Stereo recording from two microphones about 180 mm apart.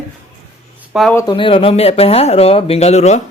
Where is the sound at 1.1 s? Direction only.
25° left (ahead or behind).